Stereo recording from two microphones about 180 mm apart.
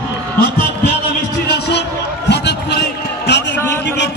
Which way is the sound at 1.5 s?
65° left (ahead or behind).